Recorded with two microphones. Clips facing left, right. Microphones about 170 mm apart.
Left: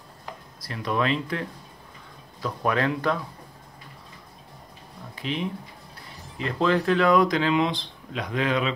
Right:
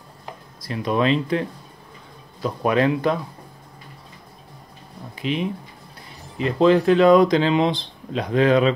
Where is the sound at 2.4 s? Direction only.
20° right (ahead or behind).